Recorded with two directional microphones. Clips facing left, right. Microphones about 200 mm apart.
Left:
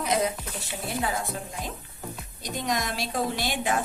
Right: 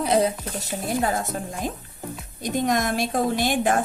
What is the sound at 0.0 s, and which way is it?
A woman's voice, 35° right (ahead or behind).